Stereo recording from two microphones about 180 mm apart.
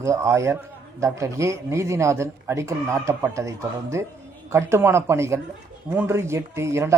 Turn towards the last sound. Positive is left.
turn(degrees=-15)  # may be behind; listen again after turning